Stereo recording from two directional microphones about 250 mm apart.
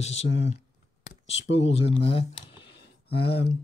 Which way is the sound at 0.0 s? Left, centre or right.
Left.